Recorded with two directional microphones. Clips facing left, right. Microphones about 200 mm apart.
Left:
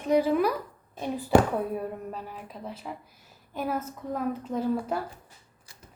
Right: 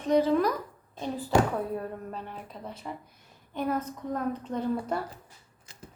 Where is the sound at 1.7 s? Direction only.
10° left (ahead or behind).